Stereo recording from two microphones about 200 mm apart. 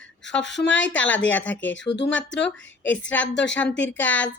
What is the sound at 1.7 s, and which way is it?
Speech, 65° left (ahead or behind).